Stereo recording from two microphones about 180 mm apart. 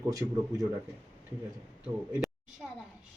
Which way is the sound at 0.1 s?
20° right (ahead or behind).